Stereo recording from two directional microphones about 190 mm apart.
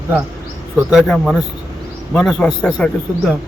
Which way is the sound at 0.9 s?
Centre (ahead or behind).